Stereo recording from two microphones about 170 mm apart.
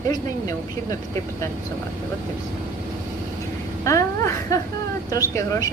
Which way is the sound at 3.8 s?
20° left (ahead or behind).